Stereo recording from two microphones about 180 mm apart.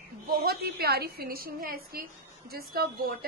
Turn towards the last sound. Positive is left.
turn(degrees=-55)  # may be behind; listen again after turning